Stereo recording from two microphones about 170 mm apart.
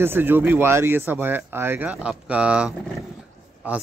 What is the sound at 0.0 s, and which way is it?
Speech, 10° right (ahead or behind).